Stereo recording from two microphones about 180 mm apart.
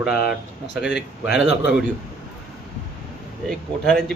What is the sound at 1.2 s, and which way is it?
Speech, 75° left (ahead or behind).